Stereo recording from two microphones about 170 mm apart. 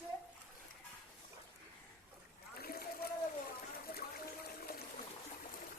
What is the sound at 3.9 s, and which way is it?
Water, 65° left (ahead or behind).